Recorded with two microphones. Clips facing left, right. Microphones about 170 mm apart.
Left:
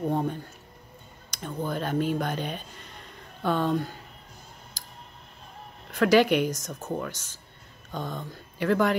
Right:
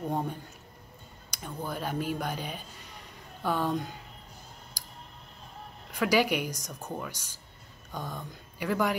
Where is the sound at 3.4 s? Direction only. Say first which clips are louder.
Left 4 dB; 10° right (ahead or behind).